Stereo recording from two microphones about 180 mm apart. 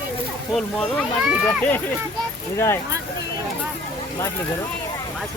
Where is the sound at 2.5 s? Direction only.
15° left (ahead or behind).